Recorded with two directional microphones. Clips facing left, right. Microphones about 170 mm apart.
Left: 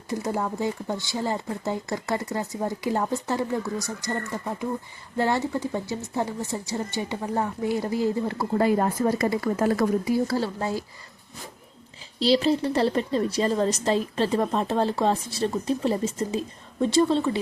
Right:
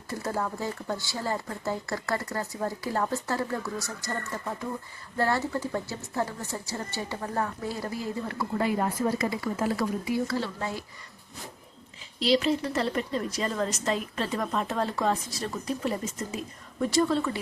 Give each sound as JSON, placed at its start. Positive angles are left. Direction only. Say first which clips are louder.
{"t": 0.1, "sound": "speech", "louder": "left 4 dB", "side_deg": 15}
{"t": 8.5, "sound": "speech", "louder": "left 5 dB", "side_deg": 40}
{"t": 10.2, "sound": "a woman's voice", "louder": "left 4 dB", "side_deg": 35}
{"t": 12.2, "sound": "a woman's voice", "louder": "left 3 dB", "side_deg": 35}